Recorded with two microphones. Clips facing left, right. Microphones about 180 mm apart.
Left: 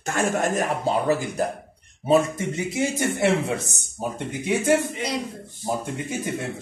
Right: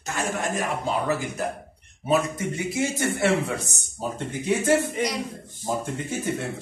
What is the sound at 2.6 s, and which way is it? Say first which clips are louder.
Speech: left 1 dB; 20° left (ahead or behind).